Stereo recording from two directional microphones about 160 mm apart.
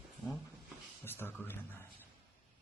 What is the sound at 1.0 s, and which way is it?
Speech, 15° left (ahead or behind).